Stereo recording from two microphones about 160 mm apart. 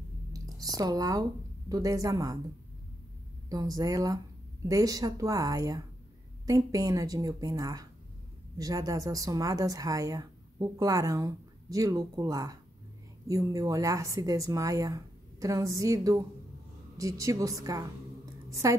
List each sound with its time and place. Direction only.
0.6 s a woman's voice: 25° right (ahead or behind)
3.4 s a woman's voice: 20° right (ahead or behind)